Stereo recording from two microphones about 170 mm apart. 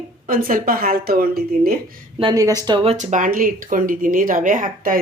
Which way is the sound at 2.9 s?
45° right (ahead or behind).